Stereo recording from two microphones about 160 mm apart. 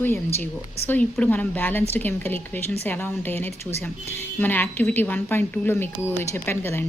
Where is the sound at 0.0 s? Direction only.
15° left (ahead or behind).